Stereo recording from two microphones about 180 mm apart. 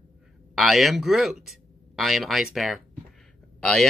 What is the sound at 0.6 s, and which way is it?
Speech, centre (ahead or behind).